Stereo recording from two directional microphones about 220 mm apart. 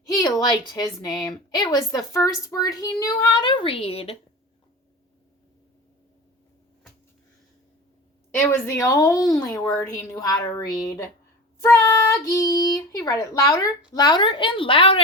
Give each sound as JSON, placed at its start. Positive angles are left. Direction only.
{"t": 0.1, "sound": "a woman's voice", "side_deg": 15}
{"t": 8.6, "sound": "a woman's voice", "side_deg": 15}